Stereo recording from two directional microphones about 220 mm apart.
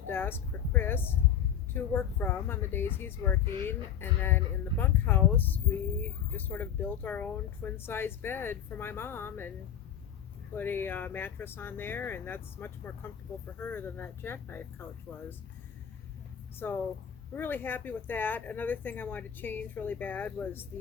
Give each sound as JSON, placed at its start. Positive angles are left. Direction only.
{"t": 0.1, "sound": "speech", "side_deg": 10}
{"t": 10.5, "sound": "speech", "side_deg": 10}
{"t": 16.6, "sound": "speech", "side_deg": 10}